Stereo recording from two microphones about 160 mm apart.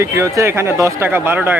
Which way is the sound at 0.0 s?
20° right (ahead or behind).